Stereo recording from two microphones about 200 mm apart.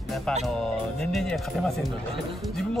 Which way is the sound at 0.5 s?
Centre (ahead or behind).